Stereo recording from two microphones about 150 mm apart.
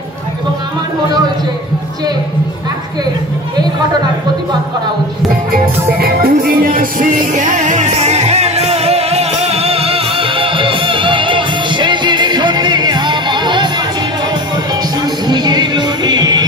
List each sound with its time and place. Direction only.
5.5 s music: 90° right; by 13.7 s 30° right (ahead or behind)
15.2 s music: 30° right (ahead or behind)